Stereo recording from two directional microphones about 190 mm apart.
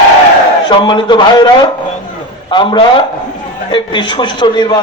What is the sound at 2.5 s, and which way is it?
Music, 25° left (ahead or behind).